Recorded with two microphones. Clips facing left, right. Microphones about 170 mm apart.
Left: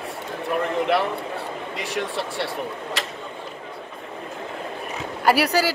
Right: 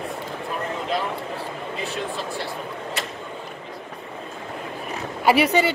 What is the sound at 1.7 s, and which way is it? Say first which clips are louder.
Speech: left 2 dB; 70° left (ahead or behind).